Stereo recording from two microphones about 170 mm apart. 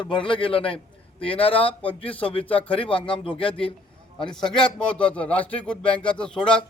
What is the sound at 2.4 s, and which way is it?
Speech, 10° left (ahead or behind).